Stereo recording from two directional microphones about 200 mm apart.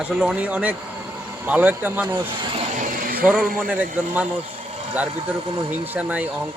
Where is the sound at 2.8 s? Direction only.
45° right (ahead or behind).